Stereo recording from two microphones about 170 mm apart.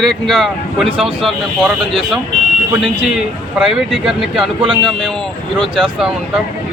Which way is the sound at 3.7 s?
Centre (ahead or behind).